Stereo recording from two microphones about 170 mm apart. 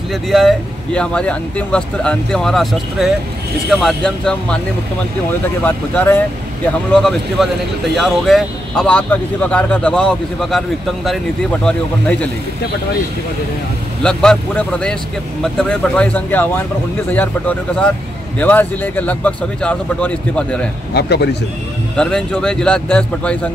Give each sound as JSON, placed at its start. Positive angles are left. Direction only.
{"t": 0.1, "sound": "speech", "side_deg": 0}
{"t": 5.6, "sound": "speech", "side_deg": 10}
{"t": 11.6, "sound": "speech", "side_deg": 10}
{"t": 14.0, "sound": "speech", "side_deg": 5}
{"t": 20.9, "sound": "speech", "side_deg": 75}
{"t": 21.9, "sound": "speech", "side_deg": 5}